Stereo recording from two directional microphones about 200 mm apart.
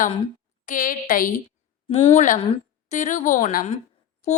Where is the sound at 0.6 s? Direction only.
40° left (ahead or behind).